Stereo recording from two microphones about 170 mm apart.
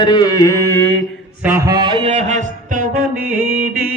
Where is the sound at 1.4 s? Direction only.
15° right (ahead or behind); by 3.0 s 55° right (ahead or behind).